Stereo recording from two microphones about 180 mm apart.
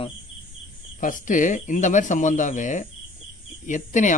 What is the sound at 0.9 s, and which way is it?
Speech, 50° left (ahead or behind).